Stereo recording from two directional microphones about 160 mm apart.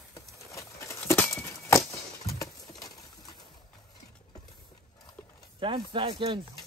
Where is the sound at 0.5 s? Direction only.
15° left (ahead or behind).